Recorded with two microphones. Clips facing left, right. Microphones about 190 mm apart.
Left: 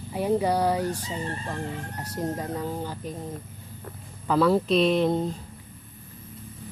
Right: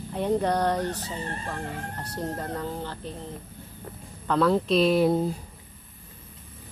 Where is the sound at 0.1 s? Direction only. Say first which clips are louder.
Left 1 dB; 5° left (ahead or behind).